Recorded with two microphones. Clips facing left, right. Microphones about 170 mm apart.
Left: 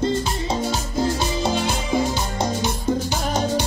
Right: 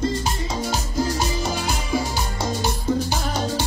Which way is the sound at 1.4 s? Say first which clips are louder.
Left 3 dB; 25° left (ahead or behind).